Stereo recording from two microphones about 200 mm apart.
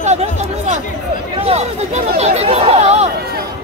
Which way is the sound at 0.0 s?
35° right (ahead or behind).